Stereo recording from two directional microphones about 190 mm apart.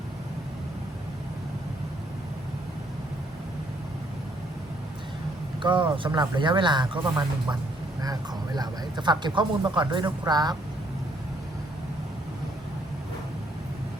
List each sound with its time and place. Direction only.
5.6 s speech: 25° right (ahead or behind)